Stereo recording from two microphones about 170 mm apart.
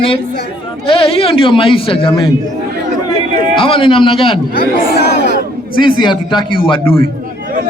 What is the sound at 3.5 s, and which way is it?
Speech, 30° left (ahead or behind).